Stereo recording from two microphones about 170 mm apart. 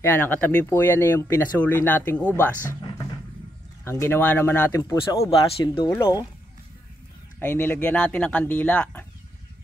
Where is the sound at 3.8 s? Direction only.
15° left (ahead or behind).